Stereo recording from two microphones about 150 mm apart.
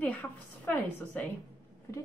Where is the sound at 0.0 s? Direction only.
10° left (ahead or behind).